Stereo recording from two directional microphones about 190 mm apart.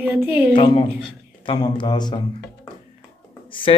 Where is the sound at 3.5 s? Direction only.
25° left (ahead or behind).